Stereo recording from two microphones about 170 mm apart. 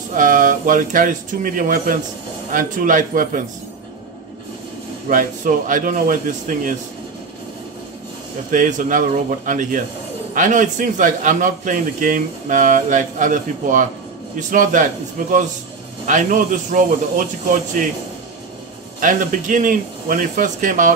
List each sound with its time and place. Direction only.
0.1 s a man's voice: 50° right (ahead or behind)
5.1 s a man's voice: 55° right (ahead or behind)
8.5 s a man's voice: 50° right (ahead or behind)
18.9 s a man's voice: 50° right (ahead or behind)